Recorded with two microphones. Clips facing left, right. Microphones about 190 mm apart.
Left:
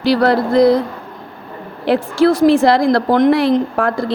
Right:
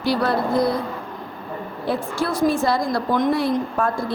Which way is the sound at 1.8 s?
90° left.